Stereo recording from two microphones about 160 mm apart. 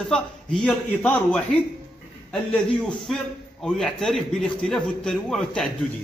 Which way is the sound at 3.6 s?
5° left (ahead or behind).